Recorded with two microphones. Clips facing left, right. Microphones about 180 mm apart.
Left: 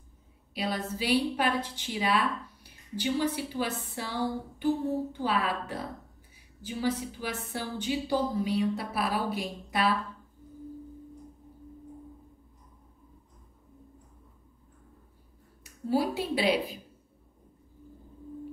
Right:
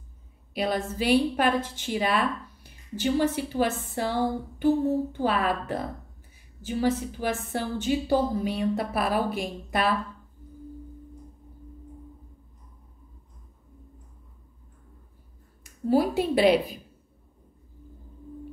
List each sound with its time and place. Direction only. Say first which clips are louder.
0.6 s a woman's voice: right 5 dB; 50° right (ahead or behind)
15.6 s a woman's voice: right 5 dB; 50° right (ahead or behind)